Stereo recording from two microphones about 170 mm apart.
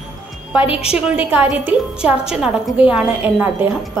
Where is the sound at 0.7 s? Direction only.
35° left (ahead or behind).